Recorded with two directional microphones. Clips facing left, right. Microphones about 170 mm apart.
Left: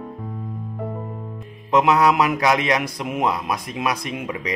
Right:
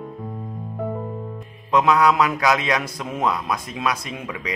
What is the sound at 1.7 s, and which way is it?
A man's voice, 20° left (ahead or behind).